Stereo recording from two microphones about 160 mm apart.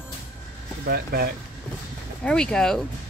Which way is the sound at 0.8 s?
70° right (ahead or behind).